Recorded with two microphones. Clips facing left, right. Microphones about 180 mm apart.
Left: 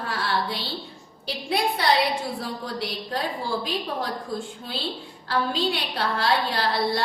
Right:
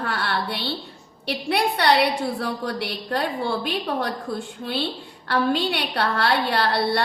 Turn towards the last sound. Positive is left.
turn(degrees=-65)  # may be behind; listen again after turning